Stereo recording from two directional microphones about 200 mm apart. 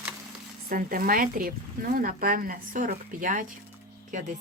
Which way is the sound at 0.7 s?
45° right (ahead or behind).